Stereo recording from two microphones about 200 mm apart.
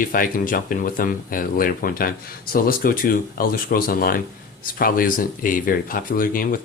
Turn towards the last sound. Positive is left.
turn(degrees=45)  # may be behind; listen again after turning